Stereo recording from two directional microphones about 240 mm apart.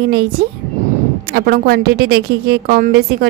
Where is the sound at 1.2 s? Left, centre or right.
Right.